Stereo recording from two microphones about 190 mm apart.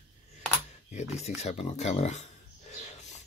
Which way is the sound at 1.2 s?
35° left (ahead or behind).